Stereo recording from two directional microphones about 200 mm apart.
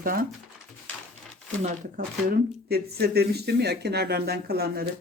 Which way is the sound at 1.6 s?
45° right (ahead or behind).